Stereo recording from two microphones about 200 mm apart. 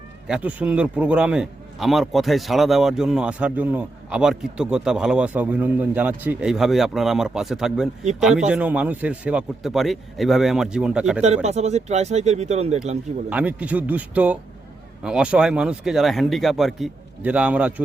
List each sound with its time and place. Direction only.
0.3 s a man's voice: 5° right (ahead or behind)
11.4 s speech: 35° right (ahead or behind)
13.3 s a man's voice: 10° right (ahead or behind)